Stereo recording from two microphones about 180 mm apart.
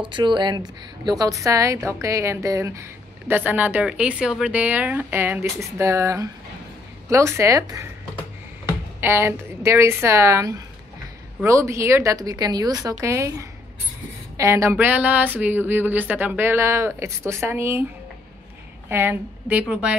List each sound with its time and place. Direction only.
0.0 s a woman's voice: 25° right (ahead or behind)
9.0 s a woman's voice: 10° right (ahead or behind)
18.9 s a woman's voice: 10° right (ahead or behind)